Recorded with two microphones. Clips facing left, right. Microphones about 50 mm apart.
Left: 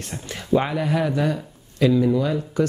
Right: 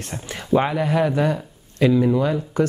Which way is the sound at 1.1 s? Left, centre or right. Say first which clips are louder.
Right 2 dB; right.